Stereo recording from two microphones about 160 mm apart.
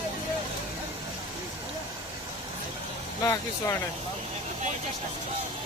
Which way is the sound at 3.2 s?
20° left (ahead or behind).